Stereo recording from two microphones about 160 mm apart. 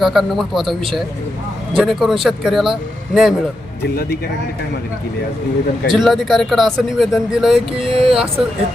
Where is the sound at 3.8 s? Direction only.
75° left (ahead or behind).